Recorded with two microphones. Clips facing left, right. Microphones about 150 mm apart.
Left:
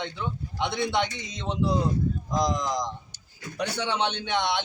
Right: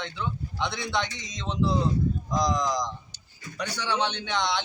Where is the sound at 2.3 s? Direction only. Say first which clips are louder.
Even; 25° left (ahead or behind).